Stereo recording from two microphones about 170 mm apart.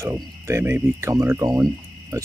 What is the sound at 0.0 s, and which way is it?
Speech, 15° right (ahead or behind).